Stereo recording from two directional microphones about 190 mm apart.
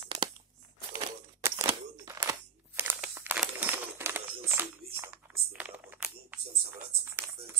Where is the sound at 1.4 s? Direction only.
15° right (ahead or behind).